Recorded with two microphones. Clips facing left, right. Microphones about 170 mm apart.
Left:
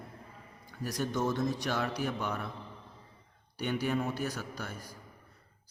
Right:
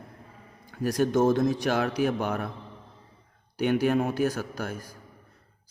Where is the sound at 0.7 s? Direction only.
65° right (ahead or behind).